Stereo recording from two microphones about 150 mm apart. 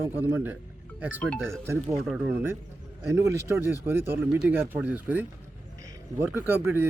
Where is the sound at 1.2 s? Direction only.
5° left (ahead or behind).